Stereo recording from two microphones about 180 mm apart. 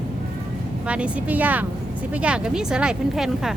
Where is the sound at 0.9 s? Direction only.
5° right (ahead or behind).